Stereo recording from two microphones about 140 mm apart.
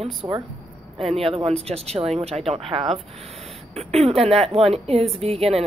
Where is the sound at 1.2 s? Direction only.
45° right (ahead or behind).